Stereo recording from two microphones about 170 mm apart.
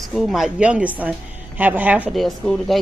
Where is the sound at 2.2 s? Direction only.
Centre (ahead or behind).